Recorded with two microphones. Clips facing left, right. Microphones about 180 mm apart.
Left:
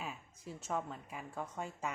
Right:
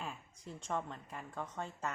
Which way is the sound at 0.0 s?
5° left (ahead or behind).